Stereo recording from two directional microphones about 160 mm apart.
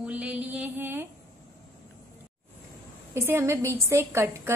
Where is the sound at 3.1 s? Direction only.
15° right (ahead or behind).